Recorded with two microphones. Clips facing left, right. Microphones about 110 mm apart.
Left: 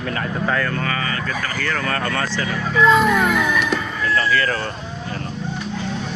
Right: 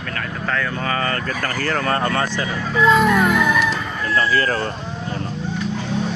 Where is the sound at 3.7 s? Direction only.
30° right (ahead or behind).